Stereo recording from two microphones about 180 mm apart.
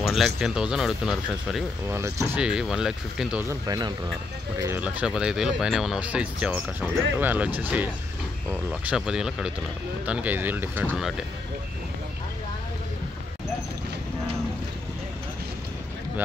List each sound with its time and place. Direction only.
0.0 s speech: centre (ahead or behind)
1.9 s speech: 15° right (ahead or behind)
2.4 s speech: 5° right (ahead or behind)
3.6 s speech: 20° right (ahead or behind); by 11.2 s 5° right (ahead or behind)